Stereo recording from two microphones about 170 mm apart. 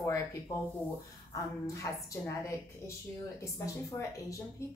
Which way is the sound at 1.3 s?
20° left (ahead or behind).